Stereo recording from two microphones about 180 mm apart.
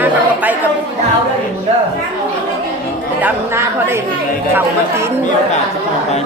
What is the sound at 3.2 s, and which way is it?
Speech, 15° right (ahead or behind).